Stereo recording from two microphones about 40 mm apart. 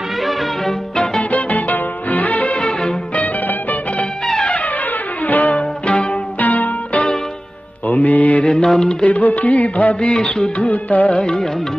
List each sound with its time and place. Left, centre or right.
0.2 s music: centre
1.3 s music: left
2.6 s music: centre
4.5 s music: left
5.6 s music: left
6.4 s music: left
8.5 s mantra: centre
9.0 s music: left
9.9 s music: left
10.6 s music: left